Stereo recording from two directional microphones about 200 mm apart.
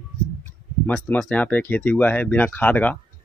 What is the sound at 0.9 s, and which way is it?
Speech, 5° left (ahead or behind).